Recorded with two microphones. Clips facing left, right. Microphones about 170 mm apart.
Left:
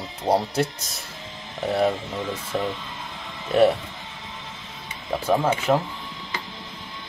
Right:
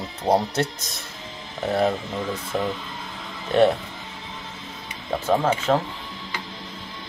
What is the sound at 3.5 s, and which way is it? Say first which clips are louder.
Speech: even; 5° left (ahead or behind).